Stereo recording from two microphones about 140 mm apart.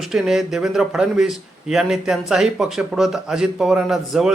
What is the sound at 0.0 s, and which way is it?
Speech, centre (ahead or behind).